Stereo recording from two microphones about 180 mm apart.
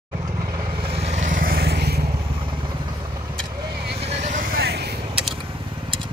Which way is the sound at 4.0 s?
40° right (ahead or behind).